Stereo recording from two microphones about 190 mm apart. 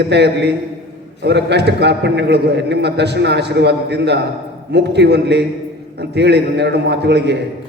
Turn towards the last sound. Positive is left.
turn(degrees=-65)  # may be behind; listen again after turning